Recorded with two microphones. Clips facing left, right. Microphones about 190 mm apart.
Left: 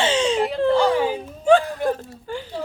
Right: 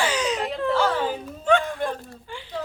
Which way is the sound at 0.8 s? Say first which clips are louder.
Left 5 dB; 15° left (ahead or behind).